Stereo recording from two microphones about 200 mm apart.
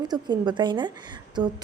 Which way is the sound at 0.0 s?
20° right (ahead or behind).